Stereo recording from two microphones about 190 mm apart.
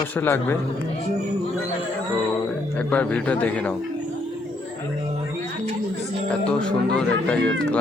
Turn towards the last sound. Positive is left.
turn(degrees=5)  # may be behind; listen again after turning